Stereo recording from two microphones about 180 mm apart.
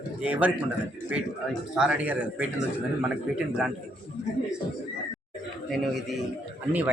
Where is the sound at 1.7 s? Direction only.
5° right (ahead or behind).